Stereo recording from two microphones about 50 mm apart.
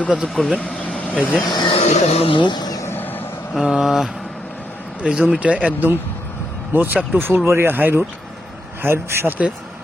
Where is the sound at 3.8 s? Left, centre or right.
Centre.